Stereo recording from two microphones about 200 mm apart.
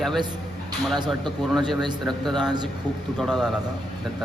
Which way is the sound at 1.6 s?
Centre (ahead or behind).